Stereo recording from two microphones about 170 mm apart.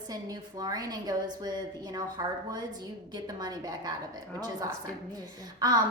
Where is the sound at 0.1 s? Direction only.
20° right (ahead or behind).